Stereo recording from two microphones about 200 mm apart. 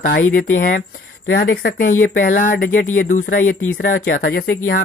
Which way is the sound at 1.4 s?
55° left (ahead or behind).